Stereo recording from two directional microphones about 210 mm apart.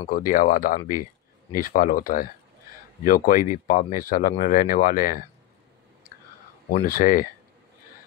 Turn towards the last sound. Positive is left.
turn(degrees=40)  # may be behind; listen again after turning